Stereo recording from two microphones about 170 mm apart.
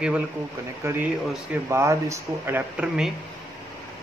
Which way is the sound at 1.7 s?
15° right (ahead or behind).